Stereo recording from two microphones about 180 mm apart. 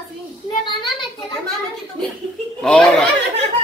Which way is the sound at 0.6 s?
25° left (ahead or behind).